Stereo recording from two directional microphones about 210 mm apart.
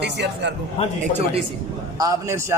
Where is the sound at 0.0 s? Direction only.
55° right (ahead or behind).